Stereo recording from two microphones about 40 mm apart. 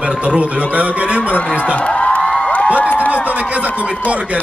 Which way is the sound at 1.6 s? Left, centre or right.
Left.